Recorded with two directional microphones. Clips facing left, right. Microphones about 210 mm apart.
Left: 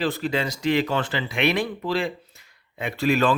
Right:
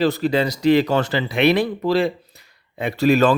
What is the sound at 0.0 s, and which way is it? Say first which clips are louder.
Speech: right 6 dB; 40° right (ahead or behind).